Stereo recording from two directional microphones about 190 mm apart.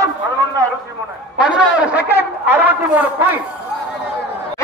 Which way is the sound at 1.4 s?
5° right (ahead or behind).